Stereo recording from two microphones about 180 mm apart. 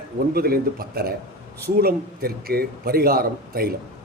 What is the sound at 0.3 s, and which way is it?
A man's voice, 55° right (ahead or behind).